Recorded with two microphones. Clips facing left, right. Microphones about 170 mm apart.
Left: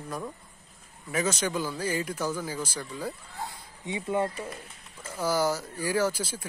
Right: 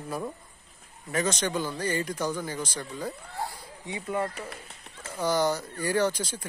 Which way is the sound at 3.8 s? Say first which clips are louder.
Left 2 dB; 25° left (ahead or behind).